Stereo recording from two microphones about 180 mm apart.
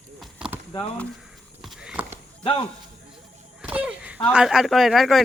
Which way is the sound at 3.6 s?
5° right (ahead or behind).